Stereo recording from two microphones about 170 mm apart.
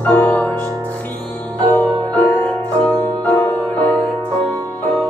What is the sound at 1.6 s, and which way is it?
Music, 25° right (ahead or behind).